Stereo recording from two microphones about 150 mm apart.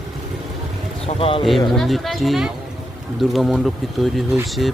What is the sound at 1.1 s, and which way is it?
Speech, 40° left (ahead or behind).